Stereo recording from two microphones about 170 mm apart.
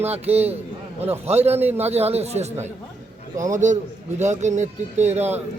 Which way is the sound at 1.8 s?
40° right (ahead or behind).